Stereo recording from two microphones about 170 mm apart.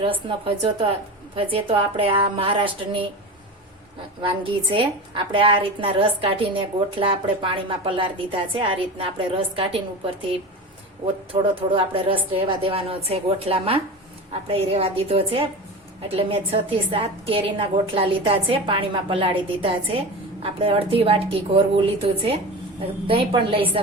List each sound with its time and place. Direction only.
0.0 s a woman's voice: 30° right (ahead or behind)
4.4 s a woman's voice: 30° right (ahead or behind)